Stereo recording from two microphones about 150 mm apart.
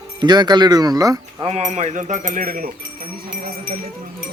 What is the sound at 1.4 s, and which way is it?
Speech, 45° right (ahead or behind).